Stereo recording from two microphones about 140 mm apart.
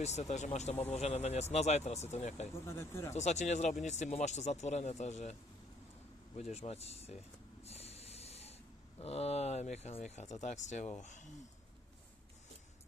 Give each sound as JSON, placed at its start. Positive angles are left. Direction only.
{"t": 0.0, "sound": "a man's voice", "side_deg": 55}
{"t": 2.8, "sound": "speech", "side_deg": 20}
{"t": 3.2, "sound": "a man's voice", "side_deg": 55}
{"t": 7.6, "sound": "snort", "side_deg": 45}
{"t": 9.0, "sound": "speech", "side_deg": 50}